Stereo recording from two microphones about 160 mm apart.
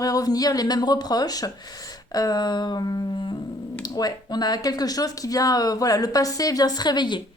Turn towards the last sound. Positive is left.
turn(degrees=30)  # may be behind; listen again after turning